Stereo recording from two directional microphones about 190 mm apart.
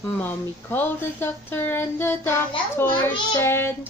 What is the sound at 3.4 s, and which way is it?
Speech, 10° left (ahead or behind).